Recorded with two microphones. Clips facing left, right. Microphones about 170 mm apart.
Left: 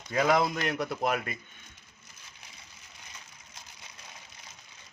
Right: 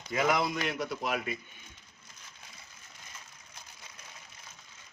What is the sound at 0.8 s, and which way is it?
Speech, 50° left (ahead or behind).